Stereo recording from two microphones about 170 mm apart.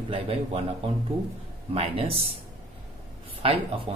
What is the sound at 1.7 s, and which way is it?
Speech, 35° right (ahead or behind).